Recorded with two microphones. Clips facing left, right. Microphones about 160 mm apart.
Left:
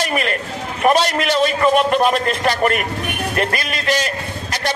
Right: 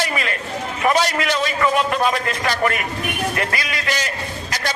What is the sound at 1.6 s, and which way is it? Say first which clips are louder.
Speech: left 3 dB; 25° left (ahead or behind).